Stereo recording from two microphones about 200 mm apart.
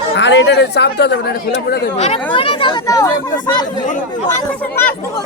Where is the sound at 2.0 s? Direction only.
30° left (ahead or behind).